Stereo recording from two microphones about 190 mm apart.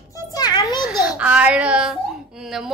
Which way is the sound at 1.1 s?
5° right (ahead or behind).